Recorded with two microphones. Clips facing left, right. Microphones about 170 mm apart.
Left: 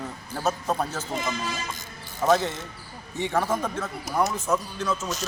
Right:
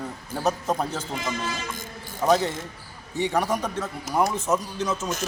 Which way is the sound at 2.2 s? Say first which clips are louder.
Right 1 dB; 15° right (ahead or behind).